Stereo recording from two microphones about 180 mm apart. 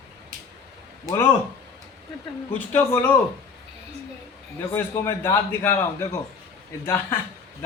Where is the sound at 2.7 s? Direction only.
10° left (ahead or behind).